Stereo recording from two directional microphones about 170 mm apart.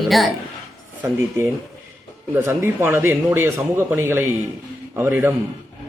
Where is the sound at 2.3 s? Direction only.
15° right (ahead or behind).